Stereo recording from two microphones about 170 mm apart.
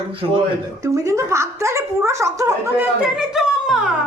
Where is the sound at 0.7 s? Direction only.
20° right (ahead or behind).